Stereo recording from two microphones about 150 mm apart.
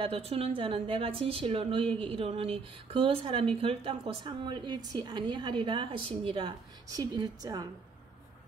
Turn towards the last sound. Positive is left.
turn(degrees=-25)  # may be behind; listen again after turning